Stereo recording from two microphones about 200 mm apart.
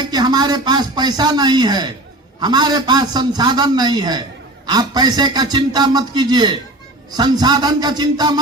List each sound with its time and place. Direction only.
0.1 s a man's voice: 20° right (ahead or behind)